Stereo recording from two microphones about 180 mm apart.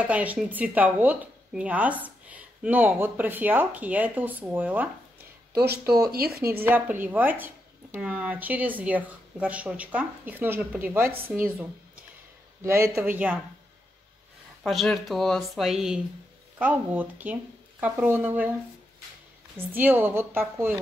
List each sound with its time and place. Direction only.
0.0 s speech: 10° right (ahead or behind)
5.5 s speech: 60° right (ahead or behind)
6.6 s speech: 10° right (ahead or behind)
12.6 s speech: 15° right (ahead or behind)
14.6 s speech: centre (ahead or behind)
19.5 s speech: 10° right (ahead or behind)